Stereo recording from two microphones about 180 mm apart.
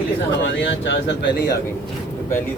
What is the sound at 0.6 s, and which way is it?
Speech, 80° left.